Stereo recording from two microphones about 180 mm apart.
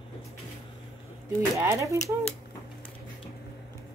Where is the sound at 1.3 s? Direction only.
15° right (ahead or behind).